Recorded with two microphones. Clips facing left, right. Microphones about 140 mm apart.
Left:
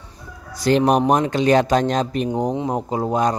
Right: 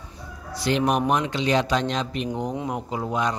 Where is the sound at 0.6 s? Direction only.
40° left (ahead or behind).